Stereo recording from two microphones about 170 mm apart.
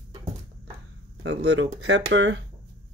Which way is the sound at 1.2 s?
85° right.